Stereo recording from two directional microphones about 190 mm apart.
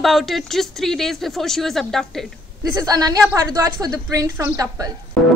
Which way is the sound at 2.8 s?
20° right (ahead or behind).